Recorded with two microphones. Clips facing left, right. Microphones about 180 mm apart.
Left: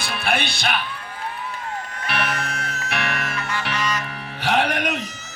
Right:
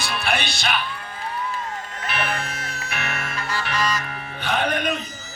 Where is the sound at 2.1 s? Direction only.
70° left (ahead or behind).